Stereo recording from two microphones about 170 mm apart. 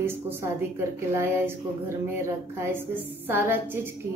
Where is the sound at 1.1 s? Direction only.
15° right (ahead or behind).